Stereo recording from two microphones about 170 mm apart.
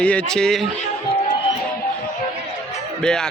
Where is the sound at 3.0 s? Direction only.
5° left (ahead or behind).